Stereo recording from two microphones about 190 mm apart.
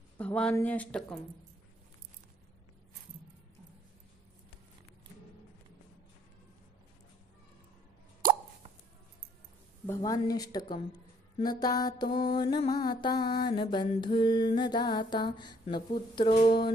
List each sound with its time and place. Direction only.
0.2 s speech: 5° left (ahead or behind)
8.2 s plop: 45° right (ahead or behind)
10.0 s mantra: 20° left (ahead or behind)